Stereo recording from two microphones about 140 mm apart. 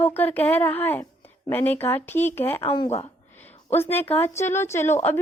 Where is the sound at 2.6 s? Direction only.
40° left (ahead or behind).